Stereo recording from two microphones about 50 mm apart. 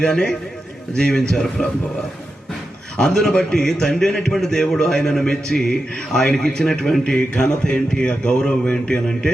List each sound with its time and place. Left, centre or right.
0.1 s a man's voice: centre
3.0 s a man's voice: centre